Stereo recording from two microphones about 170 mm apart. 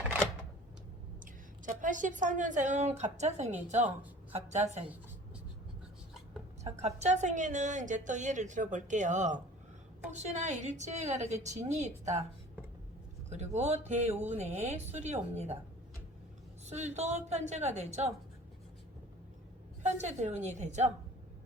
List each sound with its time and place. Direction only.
1.2 s a woman's voice: 50° right (ahead or behind)
6.7 s a woman's voice: 40° right (ahead or behind)
13.3 s a woman's voice: 40° right (ahead or behind)
16.6 s a woman's voice: 40° right (ahead or behind)
19.8 s a woman's voice: 45° right (ahead or behind)